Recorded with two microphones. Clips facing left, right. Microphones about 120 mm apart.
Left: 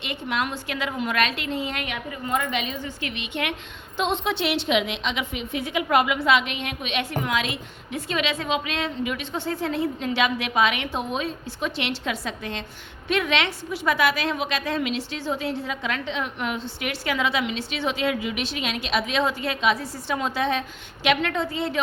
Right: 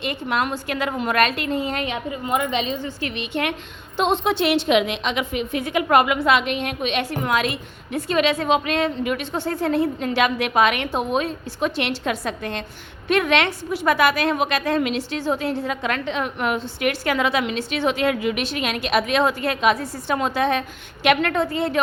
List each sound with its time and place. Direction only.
0.0 s speech: 45° right (ahead or behind); by 2.6 s 20° right (ahead or behind)
2.6 s a woman's voice: 30° right (ahead or behind); by 21.8 s 55° right (ahead or behind)